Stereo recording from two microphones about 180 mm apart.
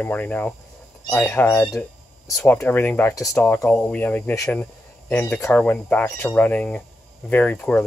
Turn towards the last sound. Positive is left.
turn(degrees=10)  # may be behind; listen again after turning